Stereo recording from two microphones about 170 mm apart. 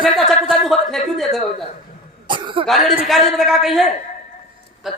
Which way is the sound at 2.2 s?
30° right (ahead or behind).